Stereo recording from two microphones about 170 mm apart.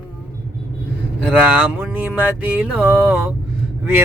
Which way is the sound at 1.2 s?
10° right (ahead or behind).